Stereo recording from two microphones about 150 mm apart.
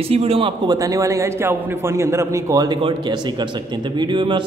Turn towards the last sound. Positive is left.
turn(degrees=-30)  # may be behind; listen again after turning